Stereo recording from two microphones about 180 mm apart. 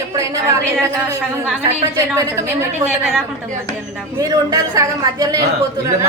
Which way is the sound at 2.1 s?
15° right (ahead or behind).